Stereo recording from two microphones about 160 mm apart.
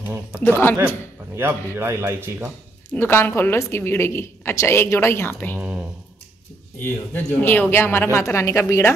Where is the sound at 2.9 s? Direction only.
15° left (ahead or behind).